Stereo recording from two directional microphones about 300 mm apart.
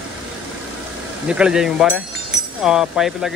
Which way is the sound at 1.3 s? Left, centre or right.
Centre.